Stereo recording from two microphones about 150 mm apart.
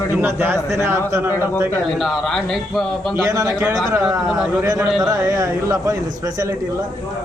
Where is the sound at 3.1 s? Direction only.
20° right (ahead or behind).